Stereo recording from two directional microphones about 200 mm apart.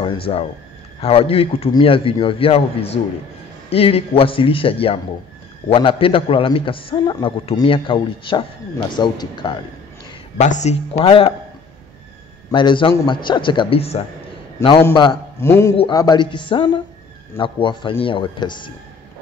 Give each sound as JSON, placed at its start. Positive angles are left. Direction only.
{"t": 0.3, "sound": "a man's voice", "side_deg": 30}
{"t": 10.3, "sound": "speech", "side_deg": 35}
{"t": 12.4, "sound": "a man's voice", "side_deg": 25}
{"t": 15.4, "sound": "a man's voice", "side_deg": 10}
{"t": 15.7, "sound": "a man's voice", "side_deg": 30}